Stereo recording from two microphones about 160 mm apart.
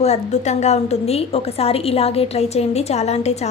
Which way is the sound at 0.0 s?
45° left (ahead or behind).